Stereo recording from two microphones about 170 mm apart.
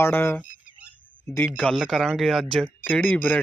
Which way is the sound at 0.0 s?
15° left (ahead or behind).